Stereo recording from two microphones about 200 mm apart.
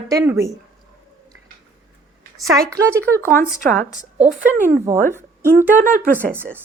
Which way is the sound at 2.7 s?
15° right (ahead or behind).